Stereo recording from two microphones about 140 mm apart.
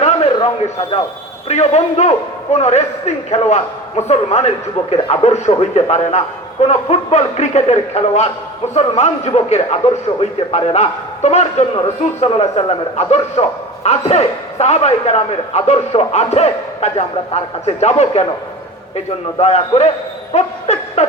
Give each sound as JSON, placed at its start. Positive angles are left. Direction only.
{"t": 0.3, "sound": "speech", "side_deg": 45}
{"t": 1.5, "sound": "a man's voice", "side_deg": 55}
{"t": 19.4, "sound": "a man's voice", "side_deg": 50}
{"t": 20.3, "sound": "dog", "side_deg": 50}